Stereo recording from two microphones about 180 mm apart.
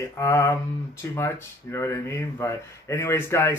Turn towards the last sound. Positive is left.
turn(degrees=15)  # may be behind; listen again after turning